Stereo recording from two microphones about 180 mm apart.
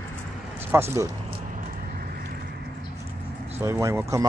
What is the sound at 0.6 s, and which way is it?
Speech, 10° right (ahead or behind).